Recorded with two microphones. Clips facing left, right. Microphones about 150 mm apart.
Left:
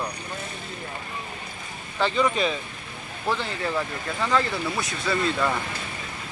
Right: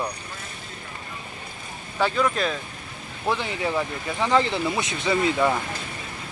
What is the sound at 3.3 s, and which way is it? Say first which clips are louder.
Speech: right 2 dB; 15° right (ahead or behind).